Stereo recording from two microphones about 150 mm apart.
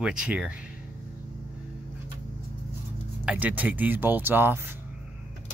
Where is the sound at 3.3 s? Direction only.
10° right (ahead or behind).